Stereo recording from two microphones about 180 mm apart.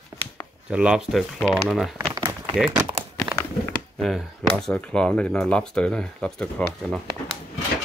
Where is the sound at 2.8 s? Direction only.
25° right (ahead or behind).